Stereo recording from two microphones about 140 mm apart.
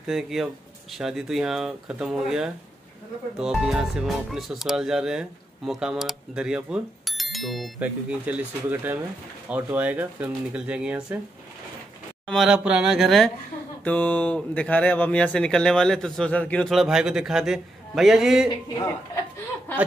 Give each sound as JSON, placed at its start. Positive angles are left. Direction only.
{"t": 0.0, "sound": "speech", "side_deg": -5}
{"t": 7.8, "sound": "speech", "side_deg": -10}
{"t": 12.3, "sound": "speech", "side_deg": 0}
{"t": 13.8, "sound": "speech", "side_deg": 10}
{"t": 18.7, "sound": "speech", "side_deg": 25}
{"t": 19.7, "sound": "chuckle", "side_deg": 15}